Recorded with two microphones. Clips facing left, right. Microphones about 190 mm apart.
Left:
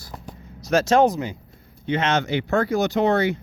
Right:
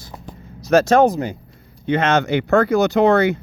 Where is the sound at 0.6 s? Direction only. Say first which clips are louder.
Right 4 dB; 55° right (ahead or behind).